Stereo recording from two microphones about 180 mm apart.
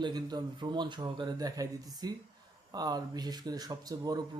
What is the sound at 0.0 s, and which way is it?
Speech, 20° right (ahead or behind).